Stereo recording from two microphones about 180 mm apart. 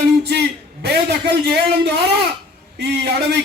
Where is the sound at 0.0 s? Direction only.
65° right (ahead or behind).